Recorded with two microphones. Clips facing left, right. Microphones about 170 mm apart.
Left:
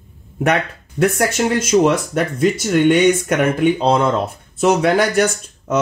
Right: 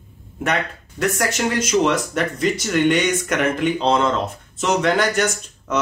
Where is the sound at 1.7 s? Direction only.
50° left (ahead or behind).